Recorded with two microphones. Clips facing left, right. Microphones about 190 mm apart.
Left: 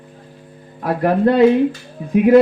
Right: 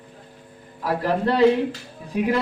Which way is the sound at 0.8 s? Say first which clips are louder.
Left 7 dB; 55° left (ahead or behind).